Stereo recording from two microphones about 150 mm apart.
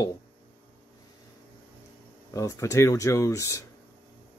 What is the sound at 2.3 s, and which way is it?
Speech, 20° left (ahead or behind).